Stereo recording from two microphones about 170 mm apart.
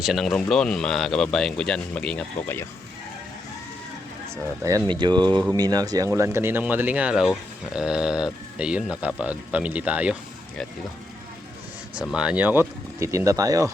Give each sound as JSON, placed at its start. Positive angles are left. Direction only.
{"t": 0.0, "sound": "speech", "side_deg": 0}
{"t": 4.6, "sound": "speech", "side_deg": -25}
{"t": 11.9, "sound": "speech", "side_deg": -5}